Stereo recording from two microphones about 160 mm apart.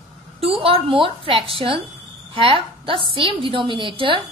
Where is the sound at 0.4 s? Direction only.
35° right (ahead or behind).